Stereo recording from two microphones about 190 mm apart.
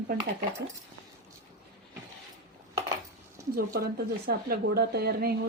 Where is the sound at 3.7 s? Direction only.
55° right (ahead or behind).